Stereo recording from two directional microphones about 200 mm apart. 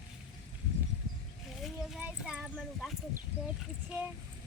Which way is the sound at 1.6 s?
Centre (ahead or behind).